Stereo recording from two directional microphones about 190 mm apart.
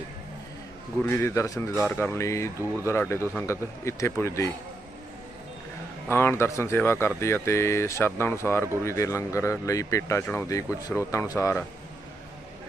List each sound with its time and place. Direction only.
1.0 s speech: 15° left (ahead or behind)
6.1 s speech: 10° left (ahead or behind)